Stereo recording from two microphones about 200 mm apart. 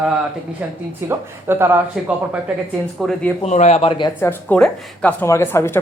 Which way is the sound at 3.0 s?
Centre (ahead or behind).